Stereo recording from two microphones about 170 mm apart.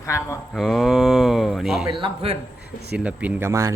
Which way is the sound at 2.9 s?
10° right (ahead or behind).